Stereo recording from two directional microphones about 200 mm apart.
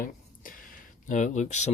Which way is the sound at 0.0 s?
45° left (ahead or behind).